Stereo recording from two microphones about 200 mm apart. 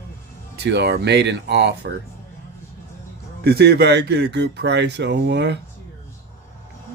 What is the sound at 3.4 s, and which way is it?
Speech, 55° right (ahead or behind).